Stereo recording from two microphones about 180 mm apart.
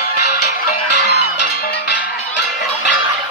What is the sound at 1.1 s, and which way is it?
Music, 70° left (ahead or behind).